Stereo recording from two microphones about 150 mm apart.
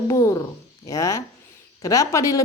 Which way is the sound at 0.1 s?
20° left (ahead or behind).